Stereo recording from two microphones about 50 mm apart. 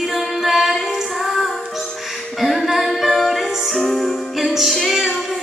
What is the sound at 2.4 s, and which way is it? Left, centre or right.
Music, centre.